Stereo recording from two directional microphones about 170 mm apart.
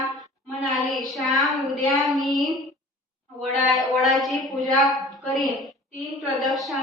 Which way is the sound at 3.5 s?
Centre (ahead or behind).